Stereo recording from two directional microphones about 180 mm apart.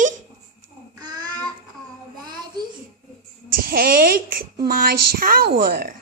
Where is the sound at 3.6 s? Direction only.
55° right (ahead or behind).